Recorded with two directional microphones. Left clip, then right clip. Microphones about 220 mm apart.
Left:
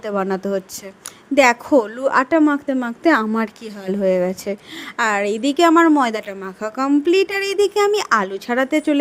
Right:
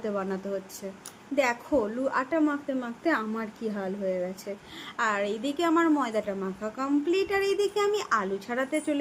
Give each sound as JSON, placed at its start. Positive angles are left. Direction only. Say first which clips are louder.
{"t": 0.0, "sound": "a woman's voice", "louder": "left 10 dB", "side_deg": 45}